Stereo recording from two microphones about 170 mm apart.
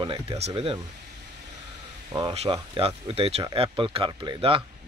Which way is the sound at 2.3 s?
35° right (ahead or behind).